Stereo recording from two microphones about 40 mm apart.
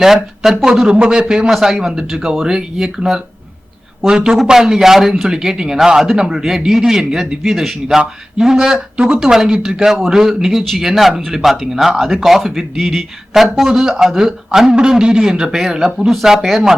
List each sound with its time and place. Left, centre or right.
0.0 s speech: centre
0.9 s a man's voice: right
1.5 s speech: centre